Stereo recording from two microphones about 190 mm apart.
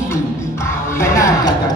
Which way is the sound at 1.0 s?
15° left (ahead or behind).